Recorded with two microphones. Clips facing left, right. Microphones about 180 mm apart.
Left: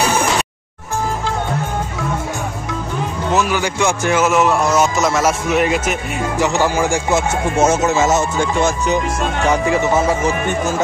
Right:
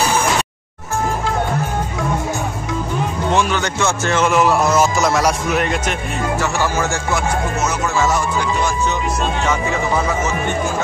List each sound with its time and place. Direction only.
3.3 s a man's voice: 10° left (ahead or behind)
6.3 s speech: 15° left (ahead or behind)
8.5 s music: 45° left (ahead or behind)